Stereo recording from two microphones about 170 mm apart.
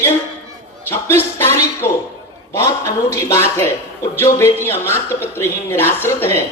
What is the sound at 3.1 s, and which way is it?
A man's voice, 15° left (ahead or behind).